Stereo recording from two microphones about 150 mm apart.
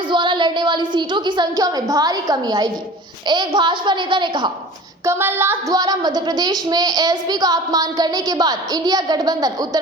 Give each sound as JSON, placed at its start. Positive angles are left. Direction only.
{"t": 0.1, "sound": "a woman's voice", "side_deg": -30}
{"t": 5.0, "sound": "speech", "side_deg": -15}